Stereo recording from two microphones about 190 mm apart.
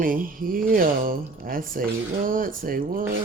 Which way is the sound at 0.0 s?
45° right (ahead or behind).